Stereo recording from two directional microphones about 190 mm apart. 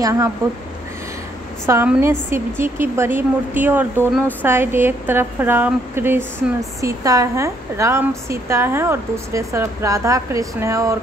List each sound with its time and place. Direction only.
0.0 s a woman's voice: 15° right (ahead or behind)
1.7 s a woman's voice: 10° right (ahead or behind)